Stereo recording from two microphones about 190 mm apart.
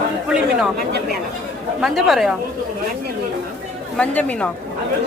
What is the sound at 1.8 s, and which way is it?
Speech, centre (ahead or behind).